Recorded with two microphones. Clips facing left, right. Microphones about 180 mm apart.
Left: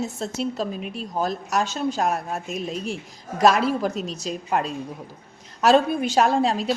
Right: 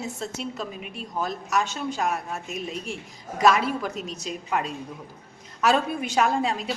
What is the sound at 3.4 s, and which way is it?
A woman's voice, 35° left (ahead or behind).